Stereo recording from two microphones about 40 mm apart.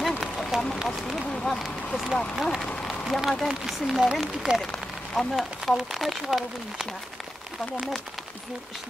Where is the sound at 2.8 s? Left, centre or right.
Centre.